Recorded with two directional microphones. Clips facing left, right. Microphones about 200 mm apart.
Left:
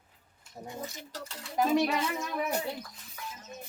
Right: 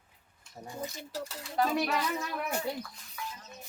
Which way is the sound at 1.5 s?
5° left (ahead or behind).